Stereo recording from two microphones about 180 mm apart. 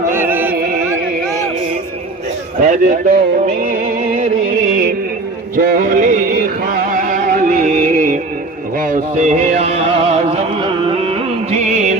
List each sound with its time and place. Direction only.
0.1 s music: 10° right (ahead or behind)
0.5 s music: 55° right (ahead or behind)
2.6 s music: 45° right (ahead or behind)